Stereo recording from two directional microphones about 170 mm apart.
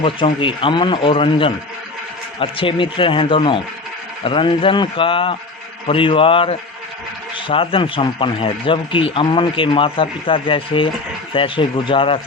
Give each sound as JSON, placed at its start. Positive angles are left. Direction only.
{"t": 0.0, "sound": "a man's voice", "side_deg": 30}